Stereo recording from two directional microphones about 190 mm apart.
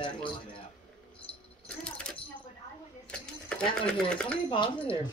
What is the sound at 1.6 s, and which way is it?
Cash register, 5° left (ahead or behind).